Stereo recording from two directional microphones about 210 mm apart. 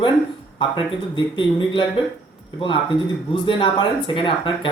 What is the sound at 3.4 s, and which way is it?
Speech, 25° left (ahead or behind).